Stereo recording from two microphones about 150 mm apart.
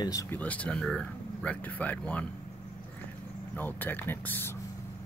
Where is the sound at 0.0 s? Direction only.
25° left (ahead or behind).